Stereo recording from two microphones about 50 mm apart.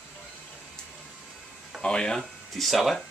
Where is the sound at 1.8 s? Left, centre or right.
Centre.